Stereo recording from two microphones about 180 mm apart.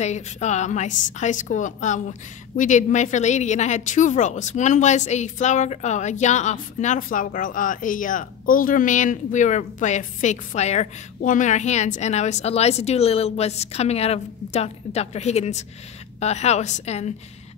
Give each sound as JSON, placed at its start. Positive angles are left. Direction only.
{"t": 0.0, "sound": "a woman's voice", "side_deg": 40}